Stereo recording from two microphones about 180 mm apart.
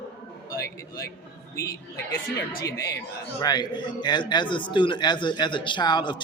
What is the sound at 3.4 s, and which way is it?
A man's voice, 25° left (ahead or behind).